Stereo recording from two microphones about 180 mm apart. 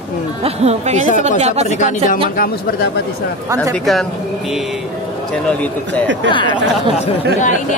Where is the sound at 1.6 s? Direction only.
40° left (ahead or behind).